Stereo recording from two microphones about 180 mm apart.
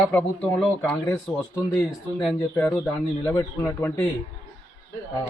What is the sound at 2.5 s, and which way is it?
Speech, 15° left (ahead or behind).